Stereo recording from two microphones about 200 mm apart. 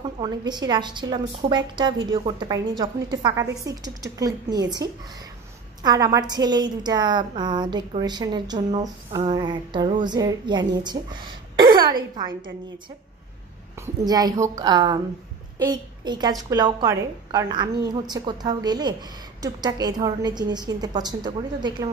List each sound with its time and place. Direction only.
0.2 s a woman's voice: 20° right (ahead or behind)
14.0 s a woman's voice: 20° right (ahead or behind)